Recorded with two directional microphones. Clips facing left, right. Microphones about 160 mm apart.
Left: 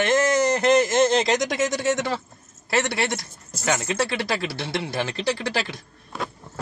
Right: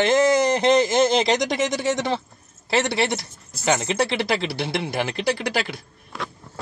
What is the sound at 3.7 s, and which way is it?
Speech, 20° right (ahead or behind).